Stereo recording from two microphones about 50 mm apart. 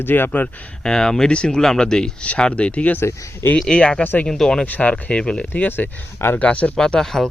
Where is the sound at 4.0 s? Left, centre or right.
Left.